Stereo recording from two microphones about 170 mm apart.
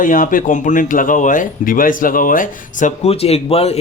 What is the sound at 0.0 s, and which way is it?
Speech, 50° left (ahead or behind).